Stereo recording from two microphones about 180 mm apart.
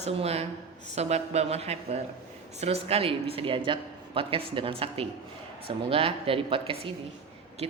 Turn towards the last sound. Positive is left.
turn(degrees=-35)  # may be behind; listen again after turning